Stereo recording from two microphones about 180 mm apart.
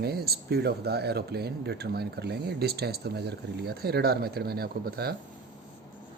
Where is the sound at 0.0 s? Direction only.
60° right (ahead or behind).